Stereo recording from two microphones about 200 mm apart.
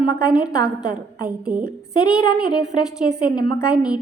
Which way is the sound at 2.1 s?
20° left (ahead or behind).